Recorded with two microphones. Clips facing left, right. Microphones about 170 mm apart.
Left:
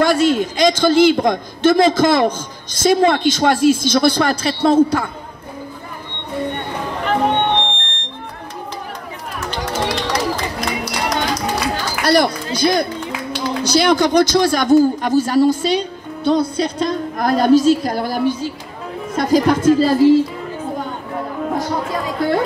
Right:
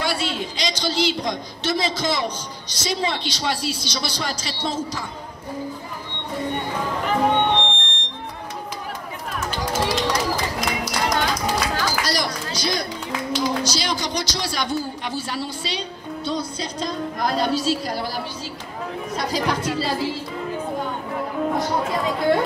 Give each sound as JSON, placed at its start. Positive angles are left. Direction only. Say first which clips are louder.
{"t": 0.0, "sound": "a man's voice", "louder": "left 11 dB", "side_deg": 45}
{"t": 7.1, "sound": "music", "louder": "left 3 dB", "side_deg": 60}
{"t": 9.6, "sound": "run", "louder": "left 2 dB", "side_deg": 65}
{"t": 12.5, "sound": "a man's voice", "louder": "left 10 dB", "side_deg": 55}